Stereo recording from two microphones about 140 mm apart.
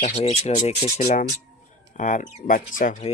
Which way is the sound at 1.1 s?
65° left (ahead or behind).